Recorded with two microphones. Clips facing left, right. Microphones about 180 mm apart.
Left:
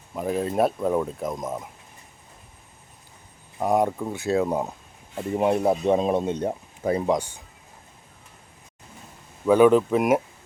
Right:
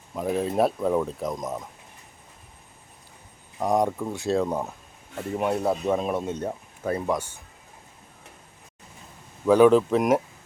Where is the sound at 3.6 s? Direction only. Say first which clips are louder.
Left 1 dB; 5° left (ahead or behind).